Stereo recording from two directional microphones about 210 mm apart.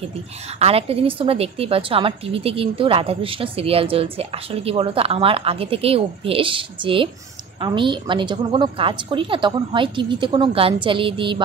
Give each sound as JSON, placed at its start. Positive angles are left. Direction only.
{"t": 0.6, "sound": "a woman's voice", "side_deg": -30}